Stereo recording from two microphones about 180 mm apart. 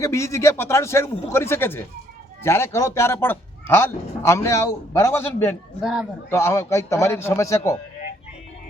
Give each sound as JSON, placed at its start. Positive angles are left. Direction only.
{"t": 0.0, "sound": "speech", "side_deg": 15}
{"t": 5.8, "sound": "a man's voice", "side_deg": -5}
{"t": 6.3, "sound": "speech", "side_deg": 15}